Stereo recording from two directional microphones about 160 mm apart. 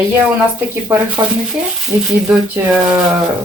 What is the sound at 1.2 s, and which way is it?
Speech, 20° right (ahead or behind).